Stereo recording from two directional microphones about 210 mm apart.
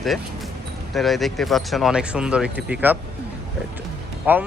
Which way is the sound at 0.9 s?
Centre (ahead or behind).